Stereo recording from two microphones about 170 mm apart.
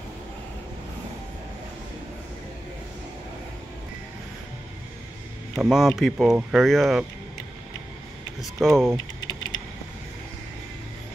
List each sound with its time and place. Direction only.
5.6 s speech: centre (ahead or behind)
8.4 s speech: centre (ahead or behind)
8.9 s typing: 20° left (ahead or behind)